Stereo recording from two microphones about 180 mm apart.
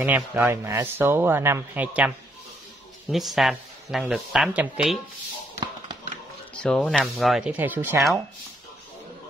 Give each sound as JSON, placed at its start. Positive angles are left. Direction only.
{"t": 0.0, "sound": "speech", "side_deg": -10}
{"t": 6.5, "sound": "speech", "side_deg": 5}